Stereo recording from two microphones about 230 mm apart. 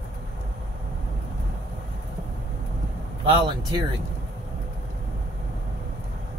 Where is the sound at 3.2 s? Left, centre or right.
Centre.